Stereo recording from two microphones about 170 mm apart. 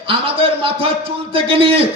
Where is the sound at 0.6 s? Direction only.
30° right (ahead or behind).